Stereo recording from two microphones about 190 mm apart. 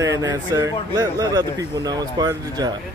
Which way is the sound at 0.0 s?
15° right (ahead or behind).